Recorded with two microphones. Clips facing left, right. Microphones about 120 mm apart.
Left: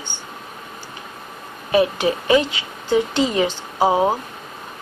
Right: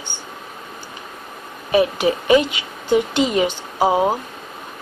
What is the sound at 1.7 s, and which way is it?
A woman's voice, 15° right (ahead or behind).